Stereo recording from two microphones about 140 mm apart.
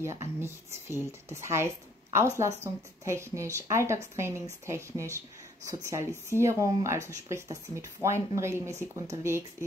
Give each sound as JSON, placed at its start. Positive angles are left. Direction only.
{"t": 0.0, "sound": "speech", "side_deg": -20}